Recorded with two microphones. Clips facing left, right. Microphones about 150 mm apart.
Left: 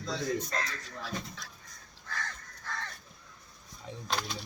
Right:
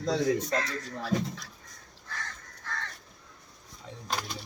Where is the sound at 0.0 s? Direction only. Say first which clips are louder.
Right 6 dB; 75° right (ahead or behind).